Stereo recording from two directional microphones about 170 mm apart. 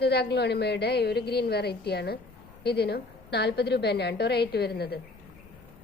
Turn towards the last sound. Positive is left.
turn(degrees=70)  # may be behind; listen again after turning